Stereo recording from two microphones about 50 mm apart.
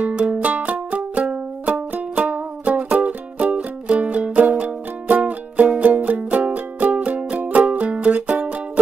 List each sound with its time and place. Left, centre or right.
0.0 s music: right